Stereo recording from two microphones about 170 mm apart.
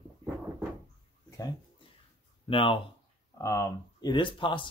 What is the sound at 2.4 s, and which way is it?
Speech, 30° left (ahead or behind).